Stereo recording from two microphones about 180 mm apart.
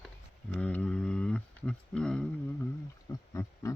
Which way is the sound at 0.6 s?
5° left (ahead or behind).